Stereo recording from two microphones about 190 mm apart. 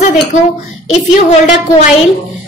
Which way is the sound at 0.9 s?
35° left (ahead or behind).